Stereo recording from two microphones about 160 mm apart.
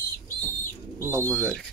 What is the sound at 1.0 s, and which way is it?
Speech, 15° right (ahead or behind).